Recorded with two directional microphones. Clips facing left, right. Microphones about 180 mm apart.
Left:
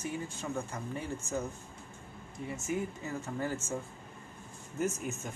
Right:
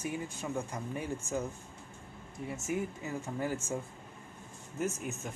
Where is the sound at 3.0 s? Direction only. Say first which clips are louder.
Even; 15° right (ahead or behind).